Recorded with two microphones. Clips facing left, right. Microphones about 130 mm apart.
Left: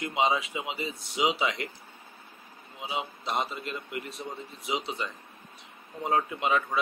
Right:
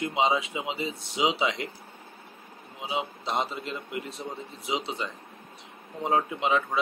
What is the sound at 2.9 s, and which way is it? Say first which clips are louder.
Speech: right 2 dB; 20° right (ahead or behind).